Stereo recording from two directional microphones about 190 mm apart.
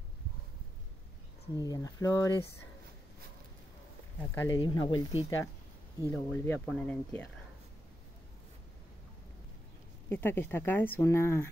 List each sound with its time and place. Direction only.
1.6 s speech: 20° left (ahead or behind)
4.2 s speech: 15° left (ahead or behind)
6.1 s speech: 10° left (ahead or behind)
10.0 s speech: 10° left (ahead or behind)